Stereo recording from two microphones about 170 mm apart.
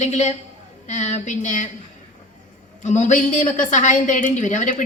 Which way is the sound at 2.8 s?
45° left (ahead or behind).